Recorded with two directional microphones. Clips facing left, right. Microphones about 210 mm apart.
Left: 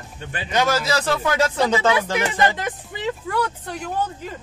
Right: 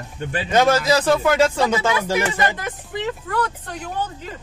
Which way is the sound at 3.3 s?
10° left (ahead or behind).